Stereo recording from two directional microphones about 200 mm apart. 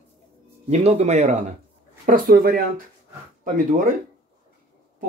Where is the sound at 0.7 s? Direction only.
30° right (ahead or behind).